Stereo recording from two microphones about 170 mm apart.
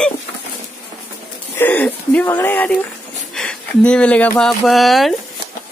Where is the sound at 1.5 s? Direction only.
10° left (ahead or behind).